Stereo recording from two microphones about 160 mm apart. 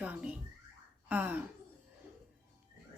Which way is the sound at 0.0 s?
10° right (ahead or behind).